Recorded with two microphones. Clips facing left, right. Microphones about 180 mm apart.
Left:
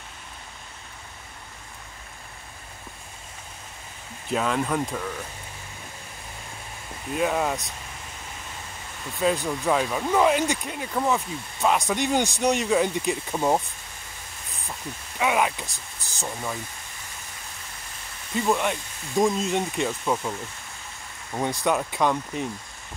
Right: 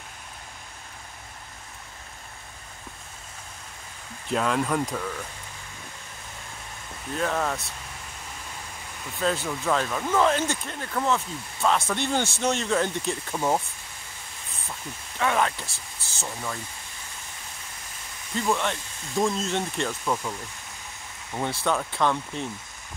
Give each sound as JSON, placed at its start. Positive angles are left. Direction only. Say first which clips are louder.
{"t": 4.3, "sound": "speech", "louder": "even", "side_deg": 0}
{"t": 7.1, "sound": "speech", "louder": "left 3 dB", "side_deg": 10}
{"t": 9.2, "sound": "speech", "louder": "left 3 dB", "side_deg": 15}
{"t": 15.1, "sound": "speech", "louder": "left 1 dB", "side_deg": 10}
{"t": 18.3, "sound": "speech", "louder": "left 2 dB", "side_deg": 10}
{"t": 21.4, "sound": "speech", "louder": "left 2 dB", "side_deg": 15}